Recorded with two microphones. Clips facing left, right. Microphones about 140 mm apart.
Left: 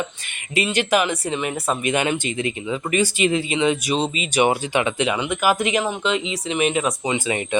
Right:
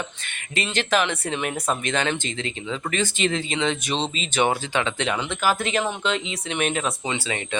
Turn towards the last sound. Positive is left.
turn(degrees=15)  # may be behind; listen again after turning